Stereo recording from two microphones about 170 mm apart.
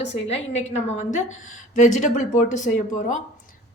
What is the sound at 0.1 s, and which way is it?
Speech, 40° left (ahead or behind).